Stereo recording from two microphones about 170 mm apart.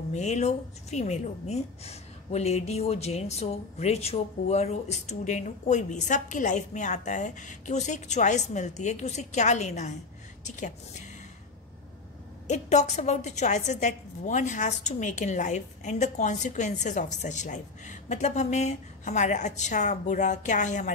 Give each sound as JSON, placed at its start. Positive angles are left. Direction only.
{"t": 0.1, "sound": "speech", "side_deg": 40}
{"t": 12.4, "sound": "speech", "side_deg": 40}